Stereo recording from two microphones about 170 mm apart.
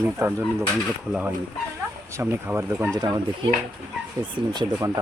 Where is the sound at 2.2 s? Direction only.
15° right (ahead or behind).